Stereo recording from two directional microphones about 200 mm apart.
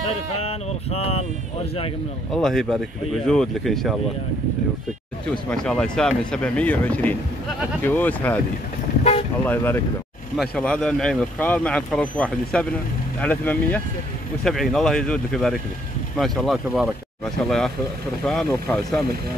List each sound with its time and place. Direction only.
0.4 s a sound: 30° left (ahead or behind)
2.3 s speech: centre (ahead or behind)
5.3 s speech: 5° left (ahead or behind)
9.4 s speech: 10° left (ahead or behind)